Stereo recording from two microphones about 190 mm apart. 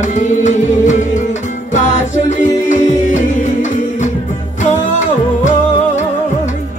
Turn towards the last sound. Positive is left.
turn(degrees=40)  # may be behind; listen again after turning